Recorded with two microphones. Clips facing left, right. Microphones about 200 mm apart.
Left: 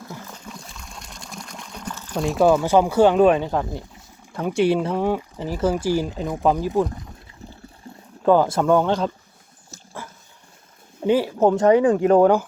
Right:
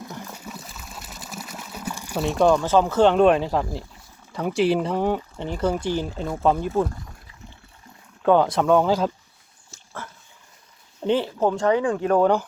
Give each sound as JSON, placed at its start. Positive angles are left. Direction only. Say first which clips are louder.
{"t": 0.2, "sound": "trickle", "louder": "right 2 dB", "side_deg": -10}
{"t": 4.3, "sound": "speech", "louder": "left 1 dB", "side_deg": 0}
{"t": 7.9, "sound": "a sound", "louder": "left 9 dB", "side_deg": 30}
{"t": 8.2, "sound": "speech", "louder": "left 1 dB", "side_deg": 0}
{"t": 11.0, "sound": "speech", "louder": "left 3 dB", "side_deg": 10}
{"t": 11.4, "sound": "speech", "louder": "left 6 dB", "side_deg": 20}